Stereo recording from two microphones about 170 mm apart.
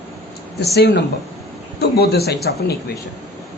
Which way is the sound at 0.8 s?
85° left.